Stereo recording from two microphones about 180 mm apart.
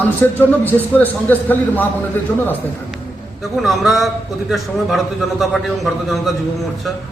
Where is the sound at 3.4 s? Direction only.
Centre (ahead or behind).